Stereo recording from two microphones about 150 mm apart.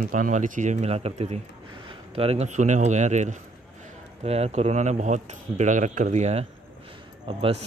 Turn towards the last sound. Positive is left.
turn(degrees=-40)  # may be behind; listen again after turning